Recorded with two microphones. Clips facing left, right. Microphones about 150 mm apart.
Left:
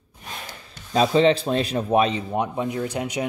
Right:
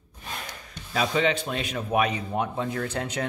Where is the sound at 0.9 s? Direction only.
30° left (ahead or behind); by 3.2 s 10° left (ahead or behind).